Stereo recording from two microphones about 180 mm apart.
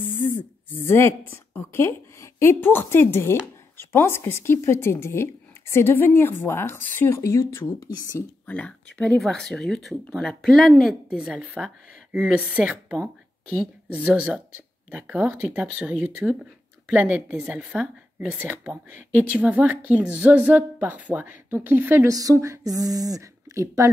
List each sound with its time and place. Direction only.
0.4 s a woman's voice: 10° left (ahead or behind)
8.5 s speech: 5° left (ahead or behind)
13.9 s a woman's voice: 5° right (ahead or behind)